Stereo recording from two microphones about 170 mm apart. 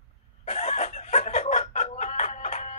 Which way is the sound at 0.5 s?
45° left (ahead or behind).